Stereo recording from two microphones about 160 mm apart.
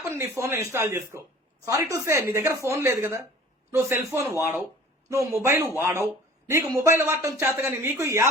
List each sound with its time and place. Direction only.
0.0 s speech: 20° right (ahead or behind)